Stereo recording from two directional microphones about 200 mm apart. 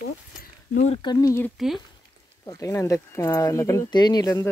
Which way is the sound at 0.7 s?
35° left (ahead or behind).